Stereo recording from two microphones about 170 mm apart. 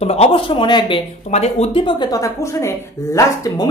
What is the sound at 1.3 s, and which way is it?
Speech, 40° left (ahead or behind).